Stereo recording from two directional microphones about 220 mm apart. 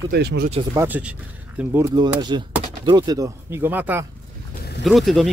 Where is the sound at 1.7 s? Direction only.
20° right (ahead or behind).